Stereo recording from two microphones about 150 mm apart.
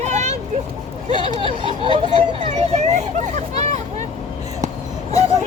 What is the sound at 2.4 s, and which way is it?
Vehicle, 50° right (ahead or behind).